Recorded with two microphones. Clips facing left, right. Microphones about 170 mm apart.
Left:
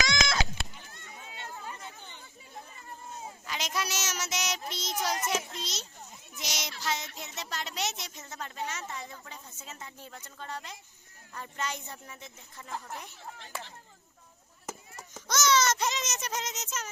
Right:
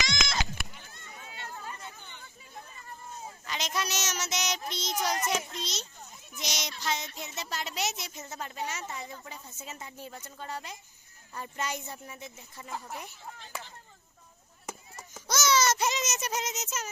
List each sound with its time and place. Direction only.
1.1 s chatter: 20° left (ahead or behind)
3.4 s speech: 5° left (ahead or behind); by 12.7 s 10° right (ahead or behind)
12.7 s speech: centre (ahead or behind)
14.7 s baby cry: centre (ahead or behind)
15.9 s speech: 10° right (ahead or behind)